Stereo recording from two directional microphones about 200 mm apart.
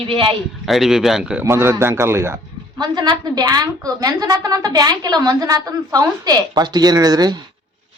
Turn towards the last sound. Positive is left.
turn(degrees=-20)  # may be behind; listen again after turning